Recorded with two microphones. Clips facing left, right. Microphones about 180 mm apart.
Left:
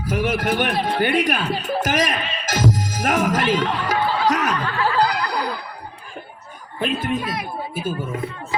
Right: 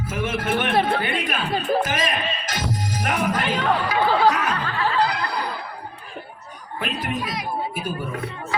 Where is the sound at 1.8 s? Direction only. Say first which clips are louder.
Left 3 dB; 45° left (ahead or behind).